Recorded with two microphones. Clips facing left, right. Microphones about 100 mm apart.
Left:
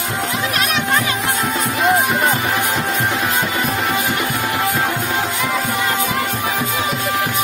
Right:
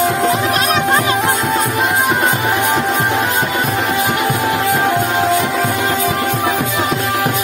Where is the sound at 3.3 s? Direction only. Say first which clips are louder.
Right 3 dB; 65° right (ahead or behind).